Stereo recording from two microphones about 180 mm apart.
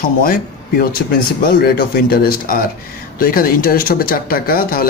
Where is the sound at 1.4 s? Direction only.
55° left (ahead or behind).